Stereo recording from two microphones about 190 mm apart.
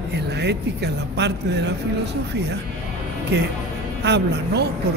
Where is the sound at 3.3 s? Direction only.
60° right (ahead or behind).